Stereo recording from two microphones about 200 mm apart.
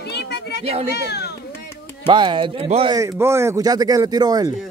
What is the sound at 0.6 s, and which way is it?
Speech, 30° right (ahead or behind).